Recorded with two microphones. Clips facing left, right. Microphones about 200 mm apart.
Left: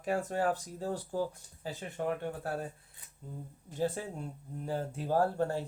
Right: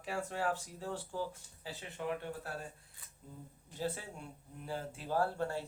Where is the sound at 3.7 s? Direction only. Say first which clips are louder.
Left 6 dB; 45° left (ahead or behind).